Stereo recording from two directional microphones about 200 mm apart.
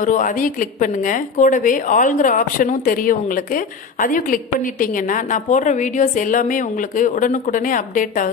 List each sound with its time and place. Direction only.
0.0 s a woman's voice: 40° left (ahead or behind)